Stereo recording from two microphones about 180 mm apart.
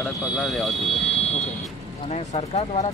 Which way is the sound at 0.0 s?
5° left (ahead or behind).